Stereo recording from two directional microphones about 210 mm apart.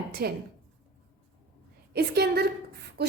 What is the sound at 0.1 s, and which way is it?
Speech, 50° right (ahead or behind).